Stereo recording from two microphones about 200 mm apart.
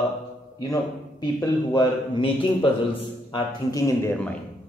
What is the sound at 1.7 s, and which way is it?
A man's voice, 25° left (ahead or behind).